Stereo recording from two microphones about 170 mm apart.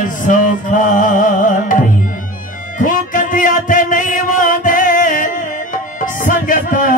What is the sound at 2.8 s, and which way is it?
Music, 50° left (ahead or behind).